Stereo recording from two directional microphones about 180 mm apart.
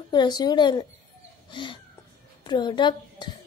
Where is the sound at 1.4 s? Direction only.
25° left (ahead or behind).